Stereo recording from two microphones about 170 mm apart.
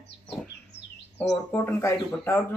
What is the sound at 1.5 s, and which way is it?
Speech, 10° left (ahead or behind).